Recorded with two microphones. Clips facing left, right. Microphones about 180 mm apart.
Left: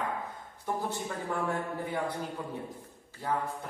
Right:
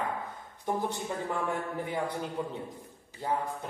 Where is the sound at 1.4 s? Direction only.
15° right (ahead or behind).